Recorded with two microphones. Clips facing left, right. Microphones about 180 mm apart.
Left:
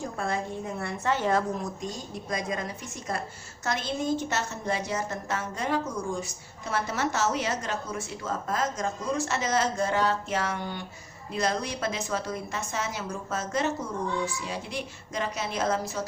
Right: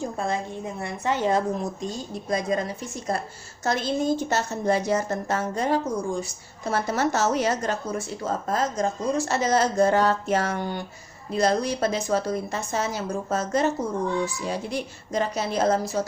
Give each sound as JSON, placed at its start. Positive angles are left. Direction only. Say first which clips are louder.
{"t": 0.2, "sound": "a woman's voice", "louder": "left 1 dB", "side_deg": -20}
{"t": 2.1, "sound": "a woman's voice", "louder": "right 7 dB", "side_deg": -30}